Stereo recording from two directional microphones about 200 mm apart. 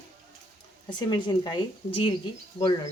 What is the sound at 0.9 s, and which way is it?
Speech, 20° left (ahead or behind).